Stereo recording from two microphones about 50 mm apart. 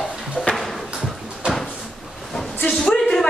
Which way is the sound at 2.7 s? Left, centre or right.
Centre.